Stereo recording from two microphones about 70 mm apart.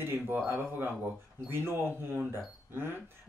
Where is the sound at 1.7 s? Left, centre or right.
Right.